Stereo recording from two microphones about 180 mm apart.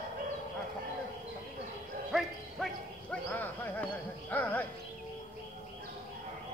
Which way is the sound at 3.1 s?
10° left (ahead or behind).